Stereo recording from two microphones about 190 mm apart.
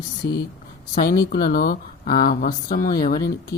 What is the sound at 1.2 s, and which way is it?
Speech, 50° left (ahead or behind).